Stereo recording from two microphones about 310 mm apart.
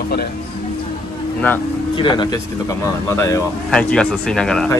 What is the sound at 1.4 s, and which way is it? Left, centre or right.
Speech, centre.